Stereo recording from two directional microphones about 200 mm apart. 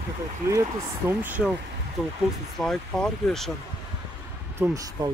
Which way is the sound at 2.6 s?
5° left (ahead or behind).